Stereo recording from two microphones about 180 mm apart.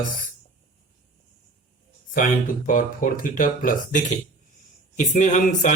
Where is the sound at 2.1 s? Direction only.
50° left (ahead or behind).